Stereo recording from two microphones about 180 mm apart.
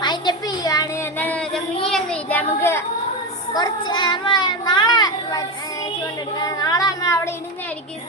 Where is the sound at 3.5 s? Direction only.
25° left (ahead or behind).